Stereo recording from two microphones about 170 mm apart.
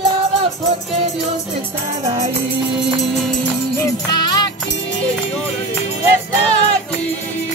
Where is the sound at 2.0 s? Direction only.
40° right (ahead or behind).